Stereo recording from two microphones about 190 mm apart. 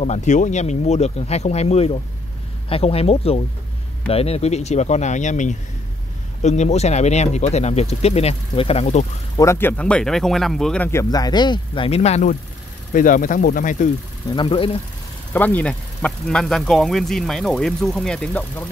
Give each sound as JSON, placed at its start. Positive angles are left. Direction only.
{"t": 0.0, "sound": "speech", "side_deg": 35}
{"t": 9.4, "sound": "speech", "side_deg": 15}
{"t": 14.3, "sound": "speech", "side_deg": 25}
{"t": 15.3, "sound": "speech", "side_deg": 10}